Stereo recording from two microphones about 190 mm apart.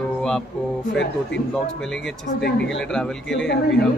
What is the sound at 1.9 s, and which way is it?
A man's voice, centre (ahead or behind).